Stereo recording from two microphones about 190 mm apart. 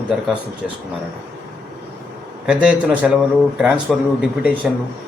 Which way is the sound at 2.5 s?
5° right (ahead or behind).